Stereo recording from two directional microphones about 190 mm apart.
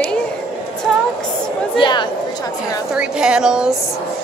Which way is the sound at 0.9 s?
Centre (ahead or behind).